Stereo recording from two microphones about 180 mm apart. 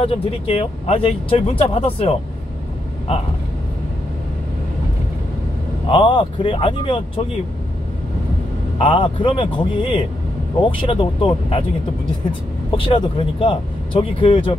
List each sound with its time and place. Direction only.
0.0 s speech: 30° left (ahead or behind)
5.9 s speech: 25° left (ahead or behind)
8.7 s speech: 30° left (ahead or behind)
12.7 s speech: 30° left (ahead or behind)